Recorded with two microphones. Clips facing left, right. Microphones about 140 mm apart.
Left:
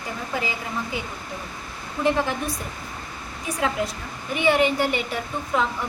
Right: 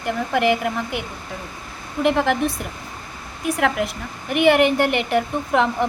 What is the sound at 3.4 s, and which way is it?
A woman's voice, 70° right (ahead or behind).